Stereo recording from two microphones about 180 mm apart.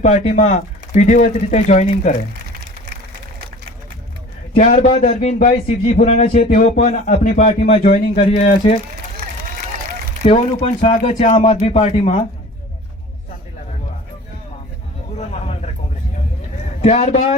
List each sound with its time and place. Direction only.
0.0 s a man's voice: 40° left (ahead or behind)
4.5 s a man's voice: 40° left (ahead or behind)
10.2 s a man's voice: 40° left (ahead or behind)
15.2 s a sound: 35° left (ahead or behind)
16.8 s a man's voice: 40° left (ahead or behind)